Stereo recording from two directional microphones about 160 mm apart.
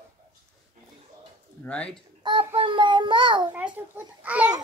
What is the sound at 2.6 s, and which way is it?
Child singing, 30° right (ahead or behind).